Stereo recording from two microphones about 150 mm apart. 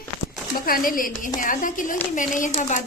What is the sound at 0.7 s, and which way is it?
A woman's voice, 70° left (ahead or behind).